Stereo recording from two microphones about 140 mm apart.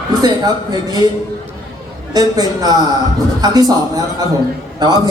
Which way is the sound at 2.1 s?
25° right (ahead or behind).